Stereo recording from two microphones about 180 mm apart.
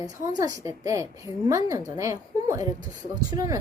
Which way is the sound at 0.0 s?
20° right (ahead or behind).